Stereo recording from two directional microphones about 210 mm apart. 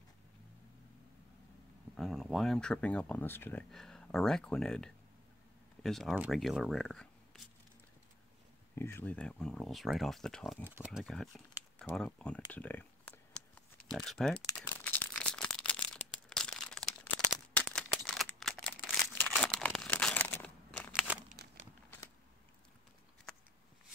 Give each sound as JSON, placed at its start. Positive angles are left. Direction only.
{"t": 2.0, "sound": "speech", "side_deg": 0}
{"t": 8.7, "sound": "speech", "side_deg": 10}
{"t": 12.5, "sound": "computer keyboard", "side_deg": 10}
{"t": 13.9, "sound": "speech", "side_deg": 0}
{"t": 14.4, "sound": "crumpling", "side_deg": 10}
{"t": 21.3, "sound": "crumpling", "side_deg": -40}